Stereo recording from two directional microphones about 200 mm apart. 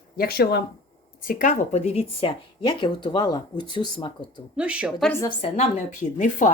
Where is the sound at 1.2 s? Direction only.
40° left (ahead or behind); by 4.1 s 20° left (ahead or behind).